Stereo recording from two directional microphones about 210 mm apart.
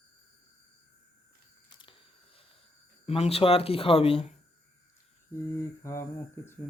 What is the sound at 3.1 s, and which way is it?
Speech, 30° left (ahead or behind).